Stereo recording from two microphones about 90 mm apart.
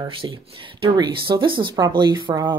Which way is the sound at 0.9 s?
55° right (ahead or behind).